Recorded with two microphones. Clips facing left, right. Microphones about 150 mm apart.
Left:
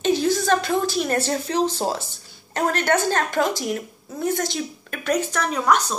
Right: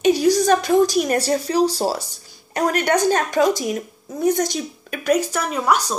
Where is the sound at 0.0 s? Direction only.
15° right (ahead or behind).